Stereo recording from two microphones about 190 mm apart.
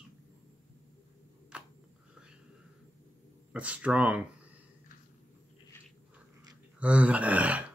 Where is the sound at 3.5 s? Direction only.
5° right (ahead or behind).